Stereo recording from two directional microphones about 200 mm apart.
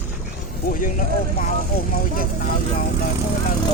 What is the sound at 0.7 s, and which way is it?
Speech, 40° left (ahead or behind).